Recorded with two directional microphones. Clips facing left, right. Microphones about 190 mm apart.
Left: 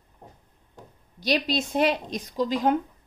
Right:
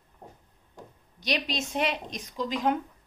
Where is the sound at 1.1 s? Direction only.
35° left (ahead or behind).